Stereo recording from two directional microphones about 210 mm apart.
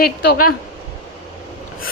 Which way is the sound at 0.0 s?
45° left (ahead or behind).